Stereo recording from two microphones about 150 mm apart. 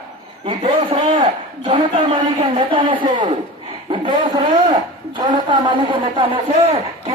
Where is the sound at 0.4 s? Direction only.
40° right (ahead or behind).